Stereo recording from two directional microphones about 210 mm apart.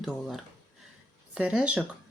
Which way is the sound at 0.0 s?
Centre (ahead or behind).